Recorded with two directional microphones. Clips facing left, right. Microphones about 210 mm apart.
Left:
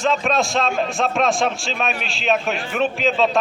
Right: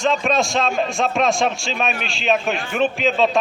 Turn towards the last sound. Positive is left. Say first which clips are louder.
# right 1 dB
turn(degrees=0)  # may be behind; listen again after turning